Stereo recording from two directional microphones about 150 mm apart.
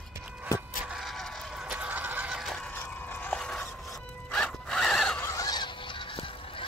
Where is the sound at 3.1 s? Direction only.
10° left (ahead or behind).